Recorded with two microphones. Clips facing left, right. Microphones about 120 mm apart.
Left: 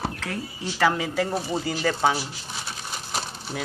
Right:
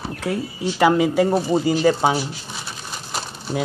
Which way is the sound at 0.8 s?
15° right (ahead or behind).